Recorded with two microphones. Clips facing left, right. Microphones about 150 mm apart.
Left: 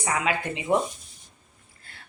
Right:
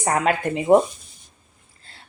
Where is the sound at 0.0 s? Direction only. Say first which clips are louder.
Right 6 dB; 45° right (ahead or behind).